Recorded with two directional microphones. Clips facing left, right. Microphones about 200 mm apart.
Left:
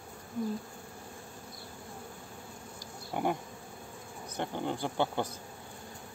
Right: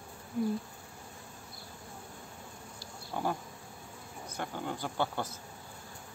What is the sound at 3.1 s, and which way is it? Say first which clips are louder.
Bee: left 2 dB; 15° left (ahead or behind).